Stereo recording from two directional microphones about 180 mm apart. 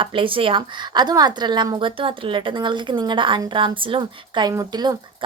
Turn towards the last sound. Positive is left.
turn(degrees=-20)  # may be behind; listen again after turning